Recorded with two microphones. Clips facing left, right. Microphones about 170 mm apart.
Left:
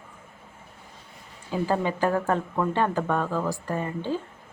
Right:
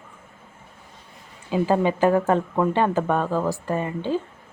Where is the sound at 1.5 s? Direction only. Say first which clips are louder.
Right 5 dB; 20° right (ahead or behind).